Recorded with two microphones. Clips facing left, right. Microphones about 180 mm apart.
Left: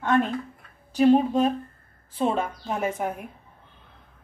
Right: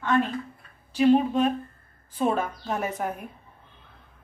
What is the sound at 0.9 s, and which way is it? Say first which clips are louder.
Speech: left 1 dB; 40° left (ahead or behind).